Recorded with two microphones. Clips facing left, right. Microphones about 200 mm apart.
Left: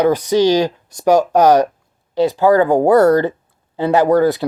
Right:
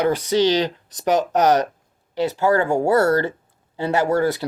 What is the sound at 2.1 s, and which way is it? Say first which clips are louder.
Speech: left 6 dB; 15° left (ahead or behind).